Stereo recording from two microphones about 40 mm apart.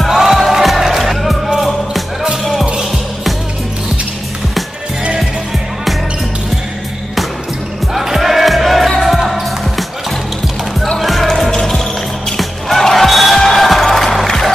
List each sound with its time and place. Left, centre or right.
0.1 s music: centre
2.5 s music: right
7.9 s music: centre
11.0 s music: centre
12.4 s basketball bounce: centre